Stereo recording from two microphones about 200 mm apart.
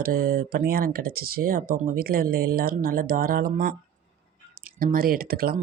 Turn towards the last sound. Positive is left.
turn(degrees=-50)  # may be behind; listen again after turning